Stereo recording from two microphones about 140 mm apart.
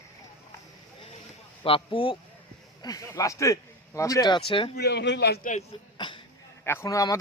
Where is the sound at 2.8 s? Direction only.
25° left (ahead or behind).